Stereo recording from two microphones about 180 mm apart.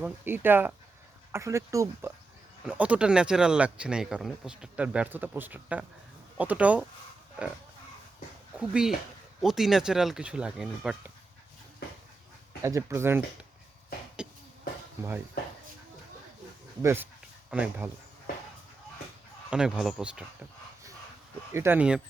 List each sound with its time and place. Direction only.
0.0 s speech: 10° right (ahead or behind)
8.5 s speech: 5° right (ahead or behind)
12.6 s speech: 15° right (ahead or behind)
14.2 s music: 5° right (ahead or behind)
16.8 s speech: 15° right (ahead or behind)
19.5 s speech: 5° right (ahead or behind)
21.5 s speech: 15° right (ahead or behind)